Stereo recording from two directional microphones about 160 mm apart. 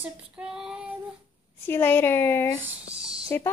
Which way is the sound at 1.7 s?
15° left (ahead or behind).